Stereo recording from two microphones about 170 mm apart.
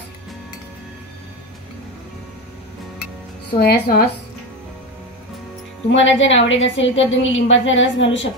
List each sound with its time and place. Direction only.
3.5 s a woman's voice: 65° left (ahead or behind)
5.9 s a woman's voice: 90° left